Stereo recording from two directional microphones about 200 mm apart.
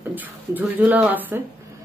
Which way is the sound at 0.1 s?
10° right (ahead or behind).